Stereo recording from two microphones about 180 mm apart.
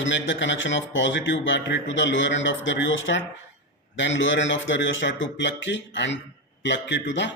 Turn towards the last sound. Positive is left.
turn(degrees=85)